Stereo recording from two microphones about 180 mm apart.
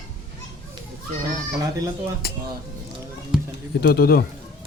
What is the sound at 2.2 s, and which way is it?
Speech, 60° left (ahead or behind).